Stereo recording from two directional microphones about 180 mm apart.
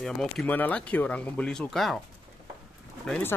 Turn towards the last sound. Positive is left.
turn(degrees=5)  # may be behind; listen again after turning